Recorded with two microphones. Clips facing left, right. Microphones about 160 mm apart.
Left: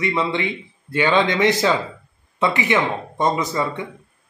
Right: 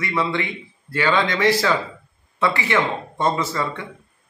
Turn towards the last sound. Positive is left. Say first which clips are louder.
# left 2 dB
turn(degrees=15)  # may be behind; listen again after turning